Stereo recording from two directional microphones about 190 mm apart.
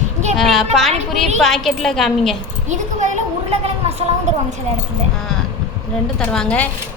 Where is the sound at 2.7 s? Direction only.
40° right (ahead or behind).